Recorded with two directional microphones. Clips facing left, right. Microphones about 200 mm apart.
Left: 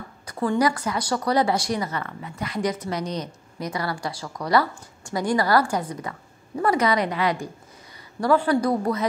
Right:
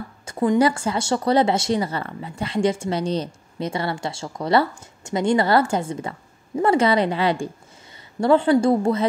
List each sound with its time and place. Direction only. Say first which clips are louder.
0.2 s speech: right 4 dB; 25° right (ahead or behind)